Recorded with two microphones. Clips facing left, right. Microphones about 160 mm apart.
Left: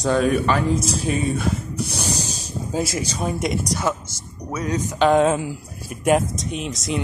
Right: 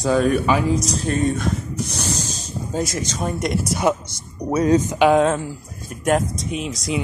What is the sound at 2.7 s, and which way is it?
Speech, 5° left (ahead or behind).